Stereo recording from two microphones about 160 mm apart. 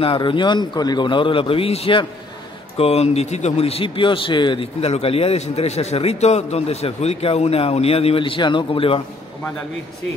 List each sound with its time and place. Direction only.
0.0 s a man's voice: 30° left (ahead or behind)